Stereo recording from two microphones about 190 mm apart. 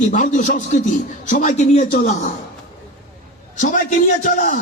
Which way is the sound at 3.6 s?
40° left (ahead or behind).